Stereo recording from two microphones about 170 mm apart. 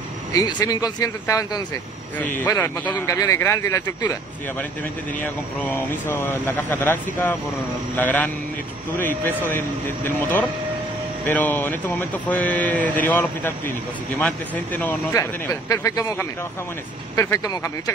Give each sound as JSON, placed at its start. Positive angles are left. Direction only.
{"t": 0.3, "sound": "speech", "side_deg": 25}
{"t": 5.2, "sound": "speech", "side_deg": 10}